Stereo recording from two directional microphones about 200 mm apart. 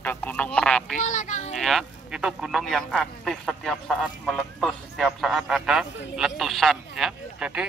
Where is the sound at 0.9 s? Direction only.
40° left (ahead or behind).